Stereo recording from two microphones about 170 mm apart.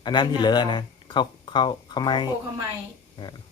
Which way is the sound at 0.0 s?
25° left (ahead or behind).